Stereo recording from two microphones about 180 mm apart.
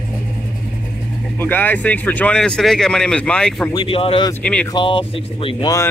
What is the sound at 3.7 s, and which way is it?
Speech, 30° left (ahead or behind).